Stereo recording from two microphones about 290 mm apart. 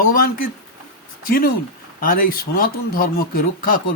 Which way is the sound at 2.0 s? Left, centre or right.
Left.